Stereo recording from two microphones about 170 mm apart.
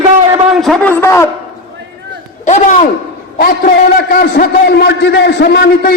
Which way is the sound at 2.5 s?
45° left (ahead or behind).